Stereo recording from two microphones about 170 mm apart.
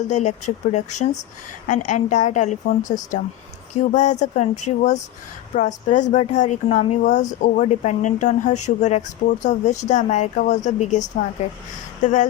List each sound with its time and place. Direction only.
0.1 s a woman's voice: 45° left (ahead or behind)